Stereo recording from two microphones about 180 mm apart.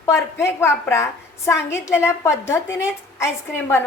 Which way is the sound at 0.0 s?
15° left (ahead or behind).